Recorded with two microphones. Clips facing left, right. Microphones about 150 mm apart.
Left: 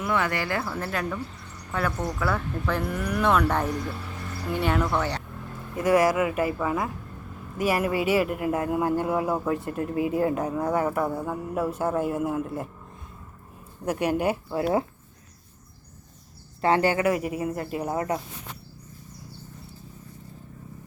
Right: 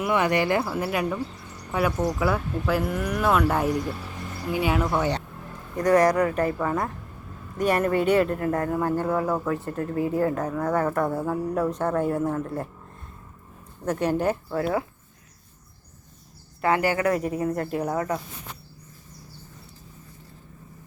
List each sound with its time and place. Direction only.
0.0 s speech: 15° right (ahead or behind)
5.7 s a man's voice: 5° left (ahead or behind)
11.1 s a man's voice: centre (ahead or behind)
13.8 s speech: 10° left (ahead or behind)
16.6 s speech: 30° left (ahead or behind)
17.1 s speech: 10° left (ahead or behind)